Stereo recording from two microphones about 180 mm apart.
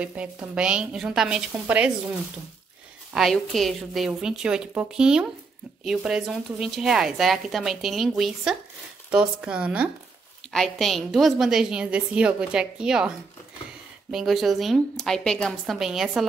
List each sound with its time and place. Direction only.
0.0 s a woman's voice: 5° right (ahead or behind)
3.1 s a woman's voice: centre (ahead or behind)
14.1 s a woman's voice: centre (ahead or behind)